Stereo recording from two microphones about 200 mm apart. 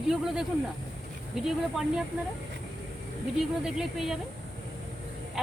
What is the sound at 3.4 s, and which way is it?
Speech, centre (ahead or behind).